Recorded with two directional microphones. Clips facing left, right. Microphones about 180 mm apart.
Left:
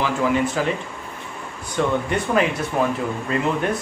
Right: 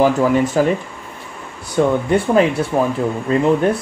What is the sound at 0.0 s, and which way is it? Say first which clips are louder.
Speech: right 6 dB; 40° right (ahead or behind).